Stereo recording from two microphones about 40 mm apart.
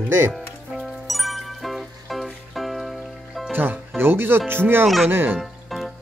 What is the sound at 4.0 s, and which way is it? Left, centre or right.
Speech, right.